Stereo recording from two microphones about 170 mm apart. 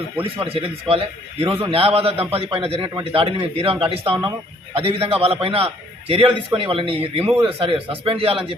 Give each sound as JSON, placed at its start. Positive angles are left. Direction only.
{"t": 0.3, "sound": "a man's voice", "side_deg": -35}